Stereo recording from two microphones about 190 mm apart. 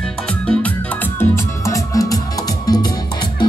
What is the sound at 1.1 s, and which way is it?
Music, 15° left (ahead or behind).